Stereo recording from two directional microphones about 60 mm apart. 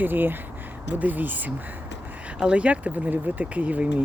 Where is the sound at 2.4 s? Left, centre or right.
Centre.